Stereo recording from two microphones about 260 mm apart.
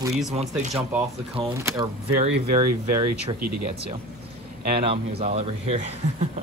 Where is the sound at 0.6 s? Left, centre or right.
Right.